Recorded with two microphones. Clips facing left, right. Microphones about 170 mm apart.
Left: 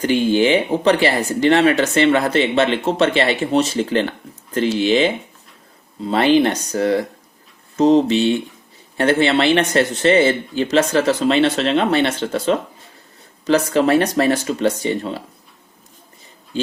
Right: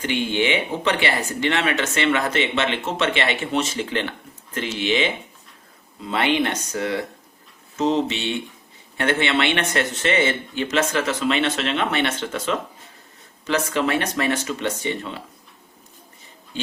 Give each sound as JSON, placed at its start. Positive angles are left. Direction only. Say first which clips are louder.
{"t": 0.0, "sound": "speech", "louder": "left 7 dB", "side_deg": 40}